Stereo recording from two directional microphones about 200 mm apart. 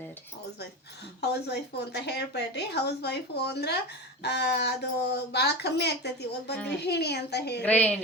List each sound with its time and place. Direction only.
1.2 s a woman's voice: 55° left (ahead or behind)
7.6 s a woman's voice: 5° left (ahead or behind)